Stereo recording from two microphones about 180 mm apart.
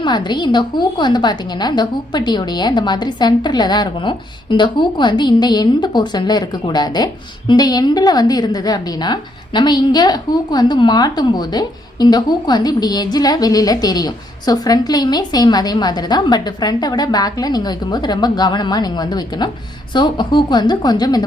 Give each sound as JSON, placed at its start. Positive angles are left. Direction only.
{"t": 0.0, "sound": "a woman's voice", "side_deg": 25}